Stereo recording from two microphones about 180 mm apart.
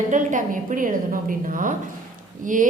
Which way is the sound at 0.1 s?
45° right (ahead or behind).